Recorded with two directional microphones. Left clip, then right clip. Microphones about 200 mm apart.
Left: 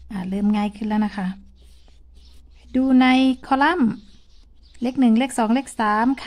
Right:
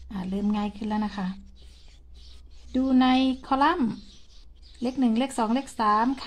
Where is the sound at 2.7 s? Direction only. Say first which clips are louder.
Left 5 dB; 25° left (ahead or behind).